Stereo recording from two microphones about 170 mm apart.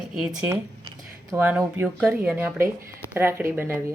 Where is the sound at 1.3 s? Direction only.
10° right (ahead or behind).